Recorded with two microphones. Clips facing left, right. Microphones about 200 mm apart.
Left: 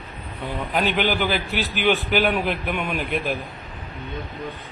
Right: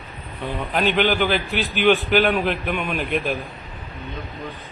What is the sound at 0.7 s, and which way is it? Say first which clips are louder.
A man's voice: right 2 dB; 10° left (ahead or behind).